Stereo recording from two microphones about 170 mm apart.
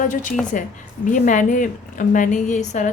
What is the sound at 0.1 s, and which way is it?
A woman's voice, 50° left (ahead or behind).